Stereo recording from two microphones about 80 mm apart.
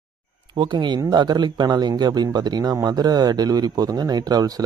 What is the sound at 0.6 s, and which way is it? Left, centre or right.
A man's voice, right.